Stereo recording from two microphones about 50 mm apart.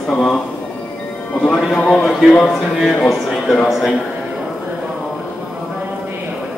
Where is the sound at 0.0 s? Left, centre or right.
Centre.